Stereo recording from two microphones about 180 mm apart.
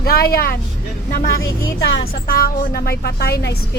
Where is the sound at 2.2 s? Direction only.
55° left (ahead or behind).